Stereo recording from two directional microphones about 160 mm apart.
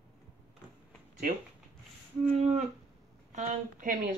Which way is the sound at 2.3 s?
45° right (ahead or behind).